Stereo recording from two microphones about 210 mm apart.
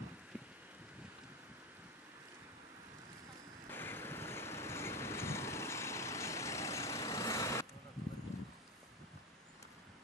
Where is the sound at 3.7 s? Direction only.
10° left (ahead or behind).